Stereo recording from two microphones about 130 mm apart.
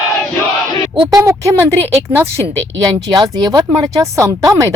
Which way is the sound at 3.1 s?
35° right (ahead or behind).